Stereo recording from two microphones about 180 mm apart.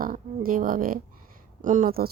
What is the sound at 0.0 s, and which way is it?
Speech, 50° right (ahead or behind).